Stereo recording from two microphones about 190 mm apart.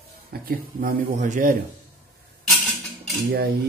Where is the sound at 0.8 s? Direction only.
40° right (ahead or behind).